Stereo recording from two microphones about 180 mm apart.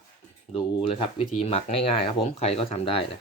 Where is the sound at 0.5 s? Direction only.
30° left (ahead or behind).